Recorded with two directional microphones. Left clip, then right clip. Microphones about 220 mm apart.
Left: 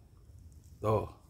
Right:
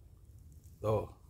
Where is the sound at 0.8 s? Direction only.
20° left (ahead or behind).